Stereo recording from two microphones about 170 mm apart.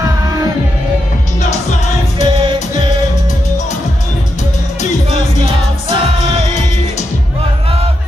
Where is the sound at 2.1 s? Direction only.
30° right (ahead or behind).